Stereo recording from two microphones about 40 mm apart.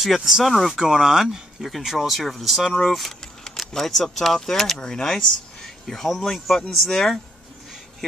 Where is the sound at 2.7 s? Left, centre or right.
Centre.